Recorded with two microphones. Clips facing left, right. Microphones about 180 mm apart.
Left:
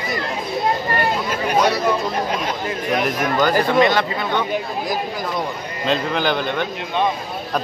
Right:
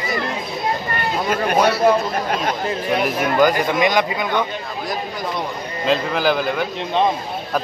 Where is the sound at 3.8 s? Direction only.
15° right (ahead or behind).